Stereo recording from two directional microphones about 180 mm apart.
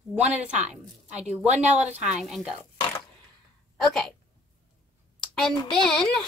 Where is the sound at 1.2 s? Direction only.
40° right (ahead or behind).